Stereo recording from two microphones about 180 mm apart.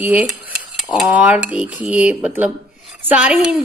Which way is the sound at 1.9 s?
5° right (ahead or behind).